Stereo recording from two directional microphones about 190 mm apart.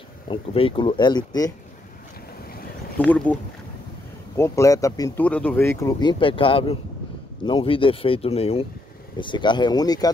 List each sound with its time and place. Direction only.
0.3 s speech: 30° left (ahead or behind)
3.0 s speech: 5° left (ahead or behind)
4.4 s speech: 15° left (ahead or behind)